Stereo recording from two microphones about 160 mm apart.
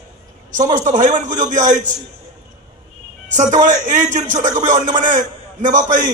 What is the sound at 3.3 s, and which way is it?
A man's voice, 50° right (ahead or behind).